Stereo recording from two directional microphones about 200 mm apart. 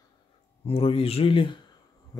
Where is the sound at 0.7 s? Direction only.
30° left (ahead or behind).